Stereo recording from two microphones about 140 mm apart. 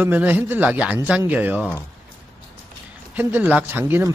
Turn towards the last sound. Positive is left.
turn(degrees=-15)  # may be behind; listen again after turning